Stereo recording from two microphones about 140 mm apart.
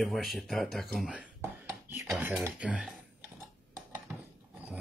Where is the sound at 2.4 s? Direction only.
10° right (ahead or behind).